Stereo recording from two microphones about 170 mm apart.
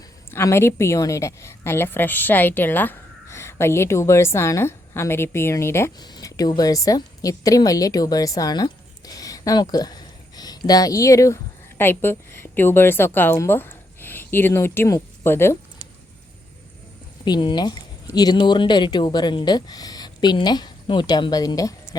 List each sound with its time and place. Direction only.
0.3 s a woman's voice: 15° left (ahead or behind)
17.2 s speech: 25° left (ahead or behind)